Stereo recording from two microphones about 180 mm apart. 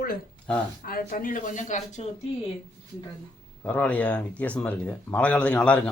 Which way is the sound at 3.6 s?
10° left (ahead or behind).